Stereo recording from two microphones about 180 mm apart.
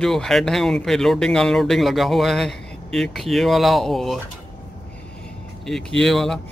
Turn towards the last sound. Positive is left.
turn(degrees=5)  # may be behind; listen again after turning